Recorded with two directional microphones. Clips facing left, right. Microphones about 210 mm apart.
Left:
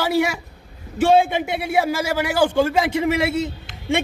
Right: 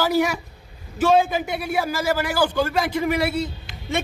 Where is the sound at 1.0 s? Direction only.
25° left (ahead or behind).